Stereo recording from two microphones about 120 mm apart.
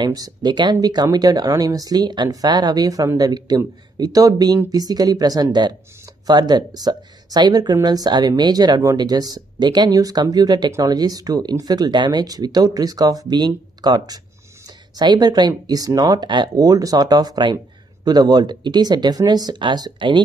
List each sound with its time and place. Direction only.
0.0 s speech: 35° right (ahead or behind)